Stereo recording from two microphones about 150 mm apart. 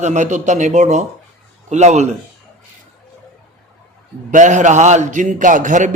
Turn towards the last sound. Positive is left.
turn(degrees=-55)  # may be behind; listen again after turning